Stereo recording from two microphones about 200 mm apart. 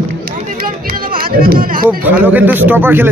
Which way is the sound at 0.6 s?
45° right (ahead or behind).